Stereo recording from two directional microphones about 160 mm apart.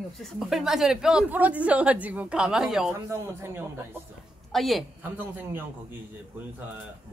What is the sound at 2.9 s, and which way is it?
Speech, 15° right (ahead or behind).